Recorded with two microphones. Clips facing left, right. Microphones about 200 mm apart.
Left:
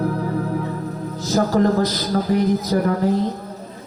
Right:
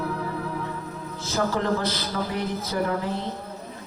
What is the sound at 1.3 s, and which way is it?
A man's voice, 40° left (ahead or behind).